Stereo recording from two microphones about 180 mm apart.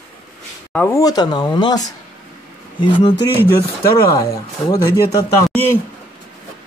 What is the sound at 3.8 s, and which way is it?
Speech, 15° left (ahead or behind).